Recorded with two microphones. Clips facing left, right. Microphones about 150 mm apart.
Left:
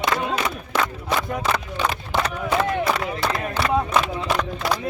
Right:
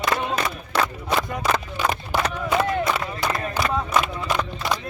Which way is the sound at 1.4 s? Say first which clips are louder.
Even; 10° right (ahead or behind).